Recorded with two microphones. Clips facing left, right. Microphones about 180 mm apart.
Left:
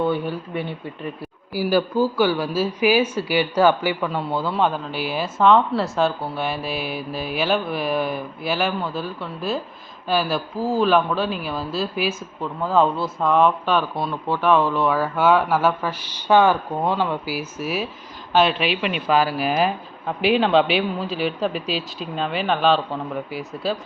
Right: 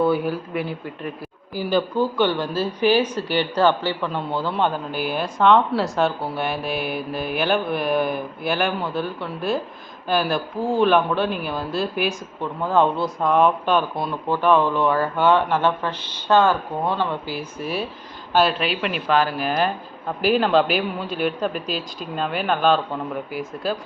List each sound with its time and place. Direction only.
0.0 s speech: 5° right (ahead or behind)
21.5 s speech: 50° right (ahead or behind)
22.1 s speech: centre (ahead or behind)